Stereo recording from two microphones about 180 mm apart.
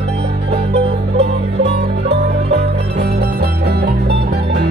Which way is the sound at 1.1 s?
70° right (ahead or behind).